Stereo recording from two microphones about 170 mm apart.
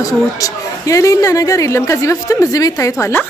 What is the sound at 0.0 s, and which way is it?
Speech, 20° left (ahead or behind).